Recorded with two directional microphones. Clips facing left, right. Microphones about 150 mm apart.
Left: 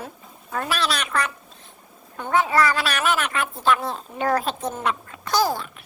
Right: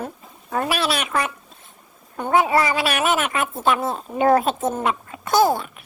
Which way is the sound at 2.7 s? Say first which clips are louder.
Right 3 dB; 5° right (ahead or behind).